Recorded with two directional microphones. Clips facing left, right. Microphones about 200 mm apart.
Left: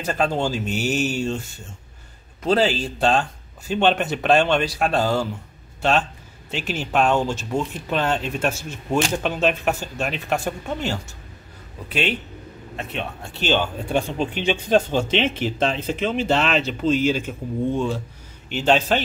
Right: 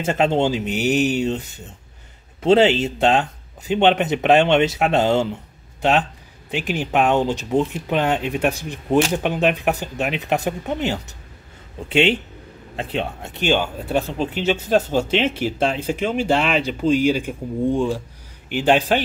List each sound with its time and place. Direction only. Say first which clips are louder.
0.0 s a man's voice: right 4 dB; 25° right (ahead or behind)
13.3 s speech: right 1 dB; 15° right (ahead or behind)